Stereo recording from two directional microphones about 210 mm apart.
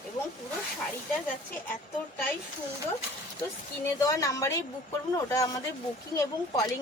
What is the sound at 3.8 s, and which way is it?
Speech, 15° left (ahead or behind).